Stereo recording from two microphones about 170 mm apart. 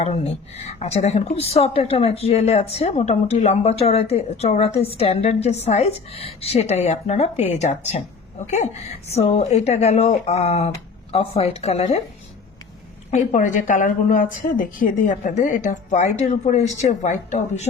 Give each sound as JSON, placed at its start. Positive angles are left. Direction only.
{"t": 0.0, "sound": "a woman's voice", "side_deg": 40}
{"t": 13.1, "sound": "a woman's voice", "side_deg": 45}